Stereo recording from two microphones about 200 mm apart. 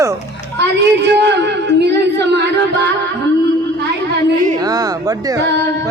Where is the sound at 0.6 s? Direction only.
60° right (ahead or behind).